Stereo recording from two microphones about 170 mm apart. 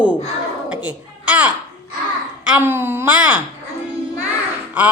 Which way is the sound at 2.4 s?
10° right (ahead or behind).